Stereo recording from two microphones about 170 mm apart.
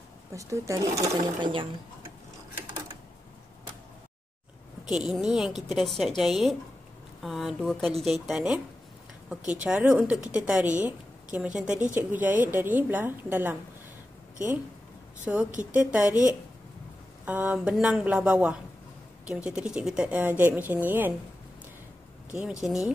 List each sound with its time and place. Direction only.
0.3 s speech: 20° right (ahead or behind)
4.8 s a woman's voice: centre (ahead or behind)
9.6 s a woman's voice: 5° right (ahead or behind)
15.3 s speech: 5° right (ahead or behind)
22.3 s a woman's voice: 5° right (ahead or behind)